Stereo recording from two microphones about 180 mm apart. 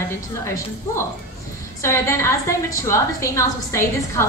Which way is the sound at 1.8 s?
15° left (ahead or behind).